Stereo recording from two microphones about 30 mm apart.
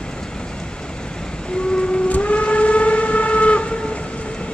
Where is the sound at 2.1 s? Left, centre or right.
Left.